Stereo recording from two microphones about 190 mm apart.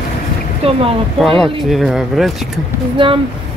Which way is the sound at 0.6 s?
30° right (ahead or behind).